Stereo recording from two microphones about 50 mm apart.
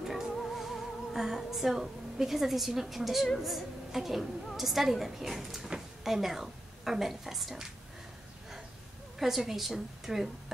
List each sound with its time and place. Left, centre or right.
0.0 s music: centre
0.4 s a woman's voice: centre
9.2 s a woman's voice: centre